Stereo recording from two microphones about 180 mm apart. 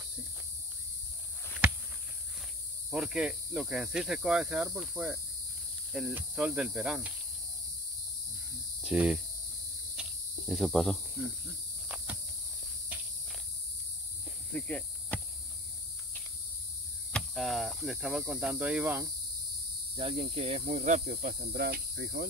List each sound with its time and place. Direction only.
2.9 s speech: 5° right (ahead or behind)
8.8 s speech: 5° right (ahead or behind)
10.0 s cricket: 5° right (ahead or behind)
10.5 s speech: centre (ahead or behind)
14.5 s cricket: 5° left (ahead or behind)
17.1 s speech: centre (ahead or behind)
20.0 s cricket: 30° right (ahead or behind)
21.1 s cricket: 55° right (ahead or behind)